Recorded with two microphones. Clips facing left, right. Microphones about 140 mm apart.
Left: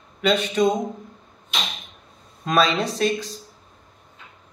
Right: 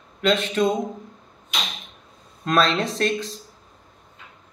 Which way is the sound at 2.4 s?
5° left (ahead or behind).